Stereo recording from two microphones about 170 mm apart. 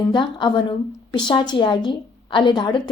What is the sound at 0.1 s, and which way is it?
A woman's voice, 25° left (ahead or behind).